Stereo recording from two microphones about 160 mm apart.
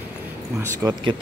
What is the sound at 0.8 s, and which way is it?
Speech, 25° right (ahead or behind).